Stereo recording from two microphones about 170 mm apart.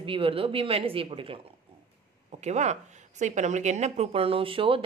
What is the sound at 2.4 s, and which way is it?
A woman's voice, 40° right (ahead or behind).